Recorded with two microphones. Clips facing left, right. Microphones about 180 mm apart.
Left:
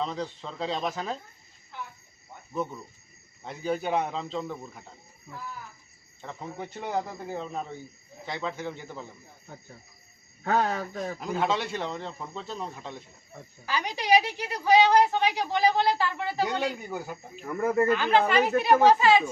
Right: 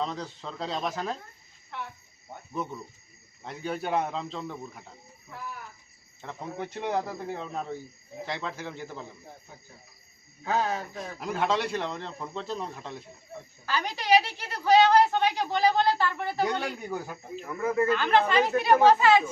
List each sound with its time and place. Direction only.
0.0 s speech: centre (ahead or behind)
1.7 s cricket: 70° right (ahead or behind)
2.5 s speech: centre (ahead or behind)
6.2 s speech: centre (ahead or behind)
10.4 s speech: 60° left (ahead or behind)
11.2 s speech: centre (ahead or behind)
13.7 s a woman's voice: 15° left (ahead or behind)